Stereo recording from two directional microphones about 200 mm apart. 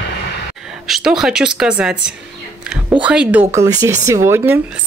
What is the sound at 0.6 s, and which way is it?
A woman's voice, centre (ahead or behind).